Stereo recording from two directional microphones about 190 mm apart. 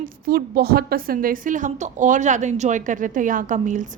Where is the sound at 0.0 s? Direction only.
50° right (ahead or behind).